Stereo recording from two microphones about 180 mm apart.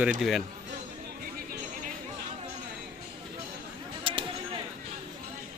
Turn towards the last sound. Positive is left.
turn(degrees=-30)  # may be behind; listen again after turning